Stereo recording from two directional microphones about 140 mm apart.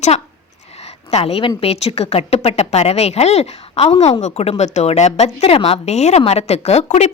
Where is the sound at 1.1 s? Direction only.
45° left (ahead or behind).